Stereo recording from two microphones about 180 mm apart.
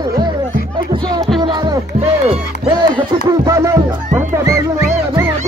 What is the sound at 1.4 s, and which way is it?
Music, 25° right (ahead or behind).